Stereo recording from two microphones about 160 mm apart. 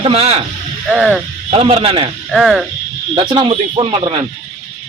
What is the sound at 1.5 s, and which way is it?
Speech, 35° right (ahead or behind).